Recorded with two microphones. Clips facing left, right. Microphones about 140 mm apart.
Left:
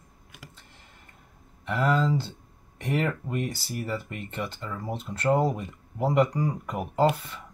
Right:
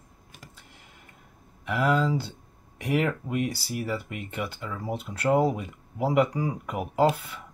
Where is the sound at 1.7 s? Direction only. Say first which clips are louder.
Even; 5° right (ahead or behind).